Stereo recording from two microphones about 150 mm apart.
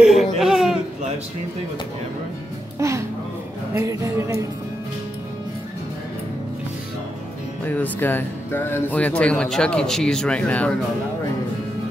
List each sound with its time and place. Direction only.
0.0 s a sound: centre (ahead or behind)
2.8 s music: 20° right (ahead or behind)
3.7 s speech: 20° right (ahead or behind)
7.6 s speech: 10° left (ahead or behind)